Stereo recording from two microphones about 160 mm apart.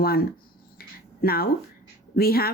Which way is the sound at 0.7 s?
70° left (ahead or behind).